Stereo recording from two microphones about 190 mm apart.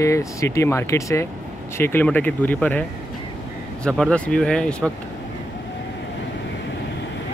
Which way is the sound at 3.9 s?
5° left (ahead or behind).